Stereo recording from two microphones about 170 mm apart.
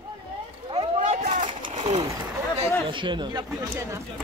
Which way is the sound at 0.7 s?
30° right (ahead or behind).